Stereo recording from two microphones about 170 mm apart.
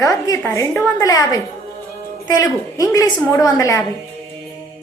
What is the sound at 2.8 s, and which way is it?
A woman's voice, 20° left (ahead or behind).